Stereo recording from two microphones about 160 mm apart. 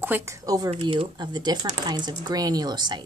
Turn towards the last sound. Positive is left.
turn(degrees=-25)  # may be behind; listen again after turning